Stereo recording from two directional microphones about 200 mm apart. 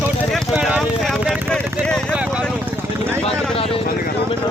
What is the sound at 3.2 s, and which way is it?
Vehicle, 30° left (ahead or behind).